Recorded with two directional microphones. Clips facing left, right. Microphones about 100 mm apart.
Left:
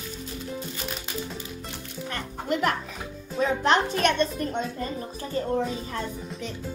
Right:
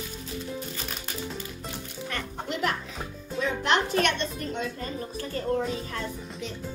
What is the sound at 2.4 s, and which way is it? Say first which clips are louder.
Music: left 5 dB; 50° left (ahead or behind).